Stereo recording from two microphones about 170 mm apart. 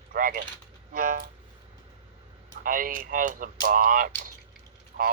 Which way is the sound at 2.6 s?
55° right (ahead or behind).